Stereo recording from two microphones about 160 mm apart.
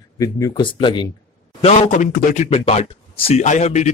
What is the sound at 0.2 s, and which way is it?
Speech, 25° left (ahead or behind).